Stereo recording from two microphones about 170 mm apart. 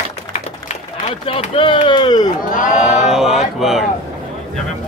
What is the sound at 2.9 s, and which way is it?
Speech, centre (ahead or behind).